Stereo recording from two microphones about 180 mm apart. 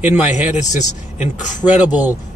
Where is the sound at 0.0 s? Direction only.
10° right (ahead or behind).